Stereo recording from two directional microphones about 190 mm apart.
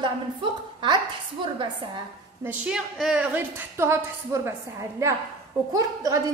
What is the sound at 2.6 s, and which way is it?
A woman's voice, centre (ahead or behind).